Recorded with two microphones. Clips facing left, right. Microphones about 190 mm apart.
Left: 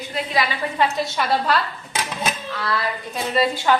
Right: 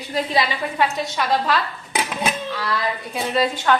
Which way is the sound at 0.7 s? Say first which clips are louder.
Left 1 dB; centre (ahead or behind).